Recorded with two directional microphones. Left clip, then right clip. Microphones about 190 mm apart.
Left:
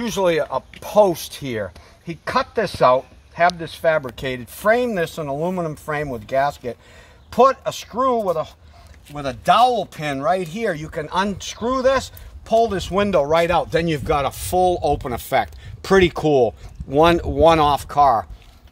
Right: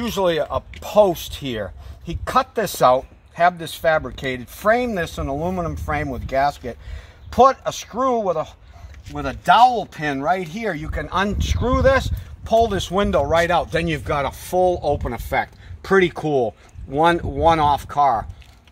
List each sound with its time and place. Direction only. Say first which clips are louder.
0.0 s speech: left 1 dB; 25° left (ahead or behind)
2.0 s speech: right 2 dB; 15° left (ahead or behind)
3.4 s speech: even; 25° left (ahead or behind)
7.9 s speech: left 1 dB; 10° left (ahead or behind)
9.4 s speech: right 1 dB; 30° left (ahead or behind)
11.1 s speech: even; 10° left (ahead or behind)
13.3 s speech: left 1 dB; 30° left (ahead or behind)